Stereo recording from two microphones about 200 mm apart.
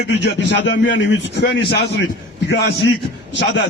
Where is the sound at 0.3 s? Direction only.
60° left (ahead or behind).